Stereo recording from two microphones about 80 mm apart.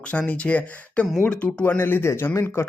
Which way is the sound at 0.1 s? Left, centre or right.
Centre.